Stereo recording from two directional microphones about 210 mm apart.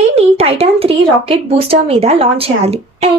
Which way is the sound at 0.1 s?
30° right (ahead or behind).